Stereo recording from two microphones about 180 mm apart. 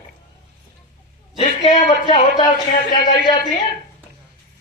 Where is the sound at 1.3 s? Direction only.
35° left (ahead or behind).